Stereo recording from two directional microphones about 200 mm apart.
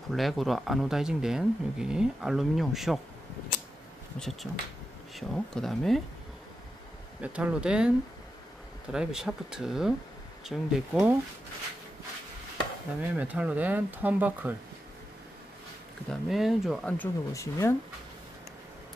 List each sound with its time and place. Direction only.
0.1 s speech: centre (ahead or behind)
4.2 s speech: centre (ahead or behind)
7.2 s speech: 5° right (ahead or behind)
8.9 s speech: 5° right (ahead or behind)
13.0 s speech: 5° right (ahead or behind)
16.1 s speech: centre (ahead or behind); by 17.7 s 15° left (ahead or behind)